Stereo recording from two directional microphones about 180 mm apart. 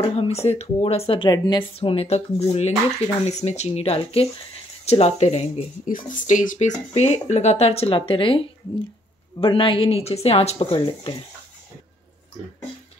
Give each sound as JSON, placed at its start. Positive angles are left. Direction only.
{"t": 0.1, "sound": "speech", "side_deg": 35}